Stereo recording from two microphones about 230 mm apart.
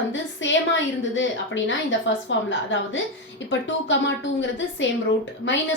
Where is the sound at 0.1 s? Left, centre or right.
Left.